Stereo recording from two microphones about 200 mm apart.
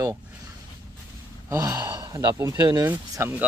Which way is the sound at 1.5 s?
15° right (ahead or behind).